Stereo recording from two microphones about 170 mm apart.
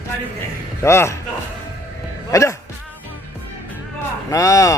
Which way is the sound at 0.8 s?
15° left (ahead or behind).